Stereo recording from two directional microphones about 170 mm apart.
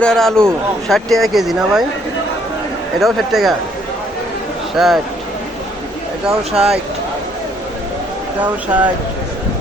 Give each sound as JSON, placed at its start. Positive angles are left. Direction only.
{"t": 0.0, "sound": "speech", "side_deg": 5}
{"t": 3.0, "sound": "speech", "side_deg": 0}
{"t": 4.8, "sound": "speech", "side_deg": 0}
{"t": 6.5, "sound": "speech", "side_deg": -35}